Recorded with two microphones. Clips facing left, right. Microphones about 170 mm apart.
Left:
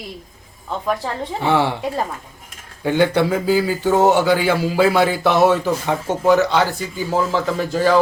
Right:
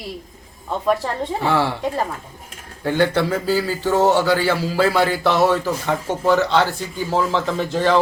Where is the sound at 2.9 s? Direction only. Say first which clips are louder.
Left 2 dB; 15° left (ahead or behind).